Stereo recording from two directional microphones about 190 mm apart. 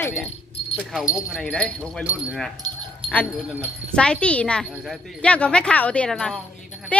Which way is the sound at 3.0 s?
30° right (ahead or behind).